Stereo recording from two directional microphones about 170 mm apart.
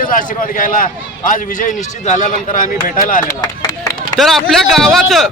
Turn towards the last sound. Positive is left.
turn(degrees=0)  # may be behind; listen again after turning